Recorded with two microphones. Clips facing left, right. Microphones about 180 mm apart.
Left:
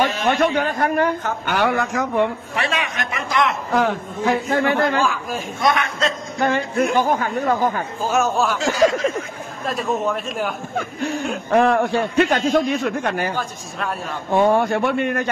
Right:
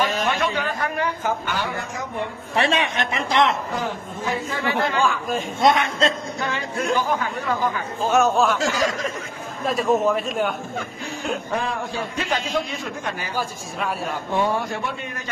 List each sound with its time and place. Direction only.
0.2 s a man's voice: 45° left (ahead or behind)
1.4 s speech: 65° left (ahead or behind); by 2.2 s 90° left
2.5 s a man's voice: 30° right (ahead or behind)
3.7 s a man's voice: 70° left (ahead or behind); by 5.0 s 55° left (ahead or behind)
5.0 s a man's voice: 5° left (ahead or behind)
5.6 s a man's voice: 25° right (ahead or behind)
6.4 s speech: 50° left (ahead or behind)
8.1 s a man's voice: centre (ahead or behind)
8.6 s speech: 45° left (ahead or behind)
9.7 s a man's voice: centre (ahead or behind)
11.5 s a man's voice: 65° left (ahead or behind)
13.4 s a man's voice: centre (ahead or behind)
14.3 s a man's voice: 55° left (ahead or behind)